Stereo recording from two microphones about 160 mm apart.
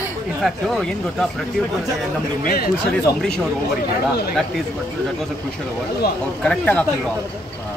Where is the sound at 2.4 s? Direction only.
65° left (ahead or behind).